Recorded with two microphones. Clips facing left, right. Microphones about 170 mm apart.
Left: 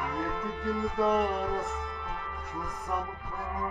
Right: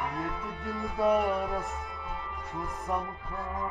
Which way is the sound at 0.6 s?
15° right (ahead or behind).